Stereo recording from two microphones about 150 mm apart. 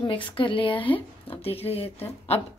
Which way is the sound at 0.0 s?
35° left (ahead or behind).